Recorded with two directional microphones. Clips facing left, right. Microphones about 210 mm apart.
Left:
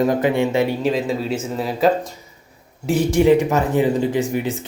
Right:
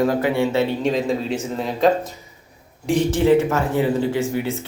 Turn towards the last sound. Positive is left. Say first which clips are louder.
# left 1 dB
turn(degrees=15)  # may be behind; listen again after turning